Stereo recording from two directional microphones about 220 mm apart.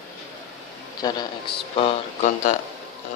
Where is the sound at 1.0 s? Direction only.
15° left (ahead or behind).